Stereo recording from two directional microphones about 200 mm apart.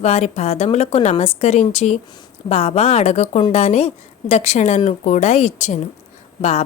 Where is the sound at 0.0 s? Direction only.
30° left (ahead or behind).